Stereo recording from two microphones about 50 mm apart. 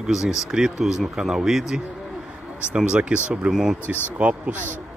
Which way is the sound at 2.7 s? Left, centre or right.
Right.